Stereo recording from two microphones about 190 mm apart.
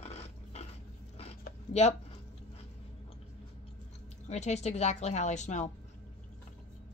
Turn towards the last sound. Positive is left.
turn(degrees=40)  # may be behind; listen again after turning